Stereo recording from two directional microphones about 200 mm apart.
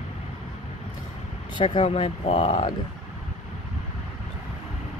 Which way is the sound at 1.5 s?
25° left (ahead or behind).